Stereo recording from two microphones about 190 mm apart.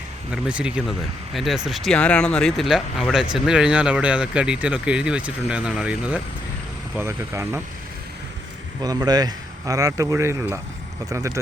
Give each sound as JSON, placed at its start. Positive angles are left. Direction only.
{"t": 0.4, "sound": "speech", "side_deg": -5}
{"t": 8.8, "sound": "speech", "side_deg": -20}